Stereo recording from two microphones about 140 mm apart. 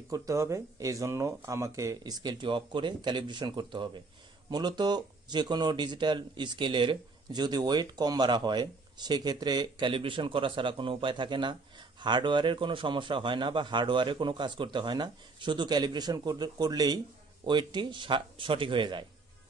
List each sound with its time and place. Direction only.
0.1 s speech: 25° right (ahead or behind)